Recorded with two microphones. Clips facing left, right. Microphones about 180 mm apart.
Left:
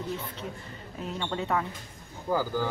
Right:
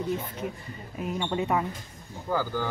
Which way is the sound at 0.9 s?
10° right (ahead or behind).